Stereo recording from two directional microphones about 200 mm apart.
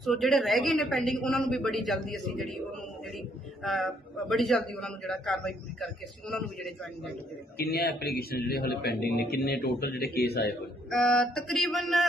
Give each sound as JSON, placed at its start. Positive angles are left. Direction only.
{"t": 0.0, "sound": "a man's voice", "side_deg": 0}
{"t": 3.6, "sound": "a man's voice", "side_deg": 0}
{"t": 7.6, "sound": "speech", "side_deg": 50}
{"t": 10.9, "sound": "a man's voice", "side_deg": 5}